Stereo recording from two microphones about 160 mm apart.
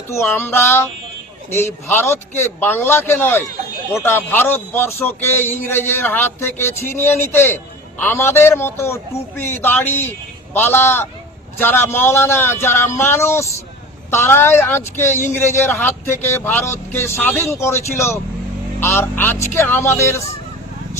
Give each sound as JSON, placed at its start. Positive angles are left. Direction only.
{"t": 0.1, "sound": "a man's voice", "side_deg": 15}